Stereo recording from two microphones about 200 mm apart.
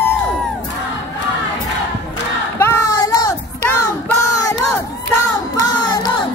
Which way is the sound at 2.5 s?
15° left (ahead or behind).